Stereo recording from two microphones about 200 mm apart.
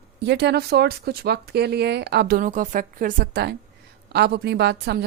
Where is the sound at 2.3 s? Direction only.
40° right (ahead or behind).